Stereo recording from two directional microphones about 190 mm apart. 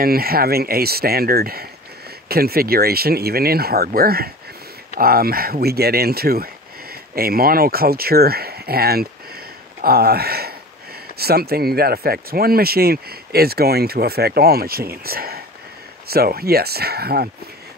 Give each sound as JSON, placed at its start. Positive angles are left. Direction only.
{"t": 0.0, "sound": "speech", "side_deg": -50}